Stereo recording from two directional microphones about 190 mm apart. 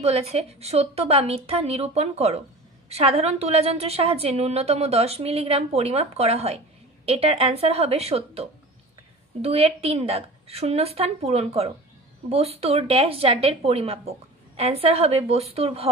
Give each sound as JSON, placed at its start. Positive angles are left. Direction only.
{"t": 0.0, "sound": "a woman's voice", "side_deg": -35}